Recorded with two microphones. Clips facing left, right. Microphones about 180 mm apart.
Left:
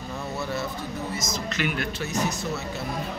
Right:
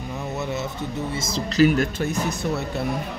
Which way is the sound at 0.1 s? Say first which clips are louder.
Right 2 dB; 20° right (ahead or behind).